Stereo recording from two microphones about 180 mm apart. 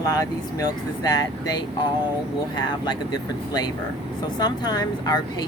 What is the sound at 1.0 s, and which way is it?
Speech, 20° left (ahead or behind).